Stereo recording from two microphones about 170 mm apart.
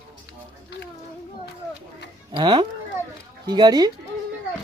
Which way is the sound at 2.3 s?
30° right (ahead or behind).